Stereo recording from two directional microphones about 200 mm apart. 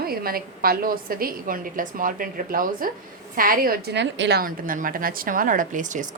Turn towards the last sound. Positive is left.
turn(degrees=-40)  # may be behind; listen again after turning